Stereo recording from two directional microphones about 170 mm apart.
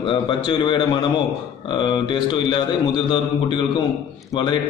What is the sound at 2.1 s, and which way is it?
A man's voice, 25° left (ahead or behind).